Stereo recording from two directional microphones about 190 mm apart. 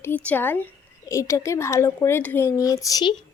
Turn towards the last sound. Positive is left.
turn(degrees=20)  # may be behind; listen again after turning